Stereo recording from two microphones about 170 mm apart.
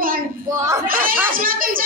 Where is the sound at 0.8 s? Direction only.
55° right (ahead or behind).